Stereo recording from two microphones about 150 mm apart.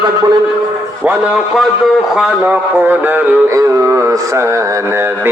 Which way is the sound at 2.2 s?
10° right (ahead or behind).